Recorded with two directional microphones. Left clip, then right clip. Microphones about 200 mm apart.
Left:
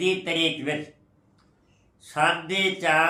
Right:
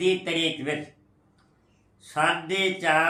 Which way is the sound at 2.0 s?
15° left (ahead or behind).